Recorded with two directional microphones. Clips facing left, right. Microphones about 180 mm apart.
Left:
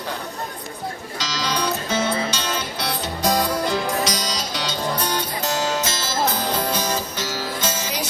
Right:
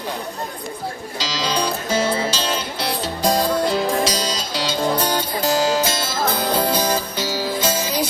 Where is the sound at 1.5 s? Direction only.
30° right (ahead or behind).